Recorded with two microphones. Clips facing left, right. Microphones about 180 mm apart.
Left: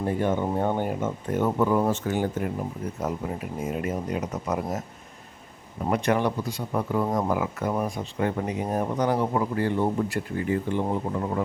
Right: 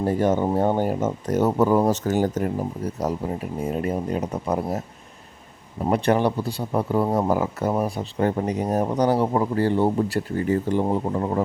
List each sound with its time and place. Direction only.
0.0 s speech: 40° right (ahead or behind)
5.9 s speech: 30° right (ahead or behind)